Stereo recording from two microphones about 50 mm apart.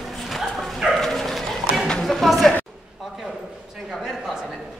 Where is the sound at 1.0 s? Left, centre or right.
Centre.